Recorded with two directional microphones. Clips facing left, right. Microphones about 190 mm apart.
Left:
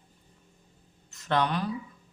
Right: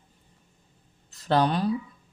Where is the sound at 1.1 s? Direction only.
35° right (ahead or behind).